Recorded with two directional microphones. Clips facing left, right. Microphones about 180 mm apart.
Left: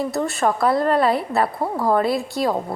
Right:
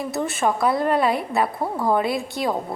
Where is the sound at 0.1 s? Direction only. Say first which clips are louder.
Left 2 dB; centre (ahead or behind).